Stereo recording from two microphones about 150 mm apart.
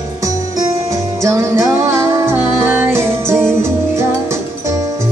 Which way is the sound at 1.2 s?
20° right (ahead or behind).